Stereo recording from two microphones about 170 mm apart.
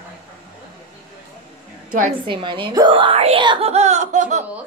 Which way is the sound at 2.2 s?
30° right (ahead or behind).